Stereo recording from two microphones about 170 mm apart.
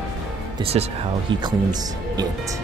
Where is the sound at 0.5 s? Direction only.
35° right (ahead or behind).